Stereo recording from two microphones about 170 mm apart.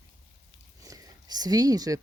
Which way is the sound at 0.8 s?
20° right (ahead or behind).